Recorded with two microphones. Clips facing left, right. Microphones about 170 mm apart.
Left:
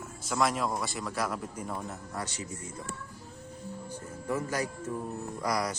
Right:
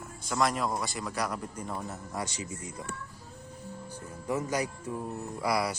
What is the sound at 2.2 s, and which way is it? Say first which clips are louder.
Speech: right 2 dB; 15° right (ahead or behind).